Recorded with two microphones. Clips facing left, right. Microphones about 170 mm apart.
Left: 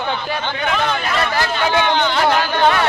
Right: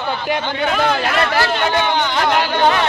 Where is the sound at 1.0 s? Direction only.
65° right (ahead or behind).